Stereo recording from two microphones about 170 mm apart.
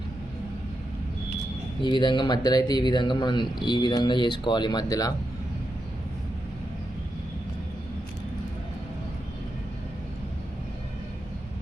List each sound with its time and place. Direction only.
1.8 s speech: 25° left (ahead or behind)